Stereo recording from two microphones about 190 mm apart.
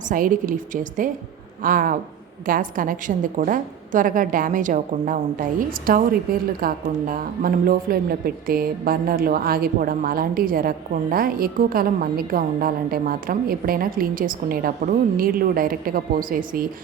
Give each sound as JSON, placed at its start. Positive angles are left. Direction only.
{"t": 0.1, "sound": "a woman's voice", "side_deg": -45}